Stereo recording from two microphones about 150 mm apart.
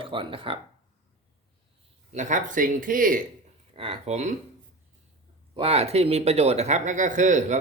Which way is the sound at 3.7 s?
40° right (ahead or behind).